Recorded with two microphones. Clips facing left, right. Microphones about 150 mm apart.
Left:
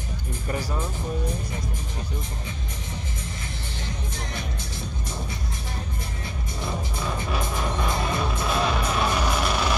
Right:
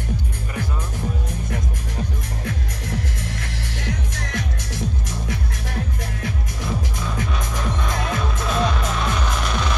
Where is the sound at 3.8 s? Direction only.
80° right.